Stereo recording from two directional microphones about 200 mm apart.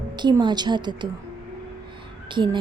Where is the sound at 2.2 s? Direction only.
25° right (ahead or behind).